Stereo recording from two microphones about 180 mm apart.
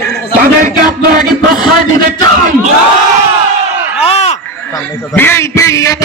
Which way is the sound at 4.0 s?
35° left (ahead or behind).